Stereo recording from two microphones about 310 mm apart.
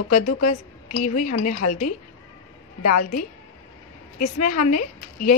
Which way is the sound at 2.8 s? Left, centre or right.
Left.